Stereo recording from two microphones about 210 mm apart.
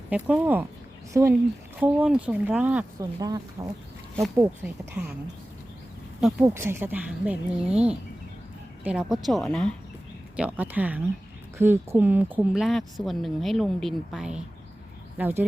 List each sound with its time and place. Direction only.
0.1 s a woman's voice: 5° right (ahead or behind)
1.8 s a woman's voice: 5° right (ahead or behind)
3.2 s a woman's voice: 20° right (ahead or behind)
4.4 s a woman's voice: 5° right (ahead or behind)
6.1 s a woman's voice: 5° right (ahead or behind)